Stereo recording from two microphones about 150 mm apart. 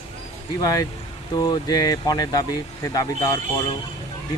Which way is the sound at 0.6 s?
25° left (ahead or behind).